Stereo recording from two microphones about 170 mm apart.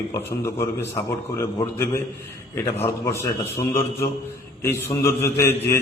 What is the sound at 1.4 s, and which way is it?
Speech, 15° left (ahead or behind).